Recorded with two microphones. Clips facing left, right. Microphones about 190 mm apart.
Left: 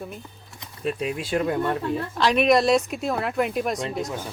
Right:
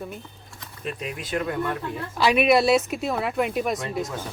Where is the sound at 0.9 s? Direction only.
30° left (ahead or behind).